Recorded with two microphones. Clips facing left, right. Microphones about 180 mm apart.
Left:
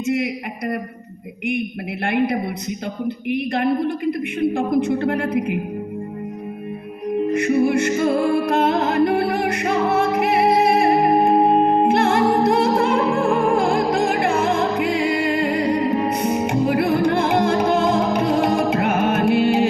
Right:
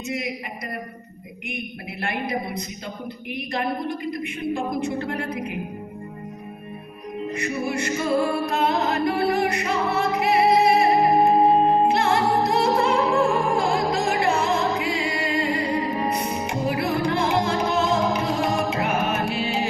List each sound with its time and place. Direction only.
2.0 s a woman's voice: 55° left (ahead or behind)
7.3 s music: 55° left (ahead or behind)
11.9 s music: 55° left (ahead or behind)